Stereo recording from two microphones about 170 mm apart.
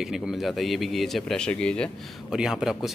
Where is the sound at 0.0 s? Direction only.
5° right (ahead or behind).